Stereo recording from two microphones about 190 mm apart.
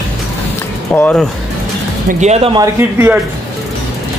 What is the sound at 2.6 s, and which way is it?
Speech, 10° right (ahead or behind).